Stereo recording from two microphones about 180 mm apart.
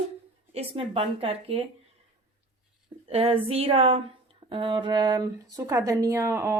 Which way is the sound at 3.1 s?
35° right (ahead or behind).